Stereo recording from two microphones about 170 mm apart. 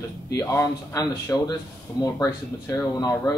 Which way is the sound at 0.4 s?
20° left (ahead or behind).